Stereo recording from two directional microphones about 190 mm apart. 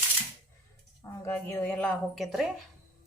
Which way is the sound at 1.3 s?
10° left (ahead or behind).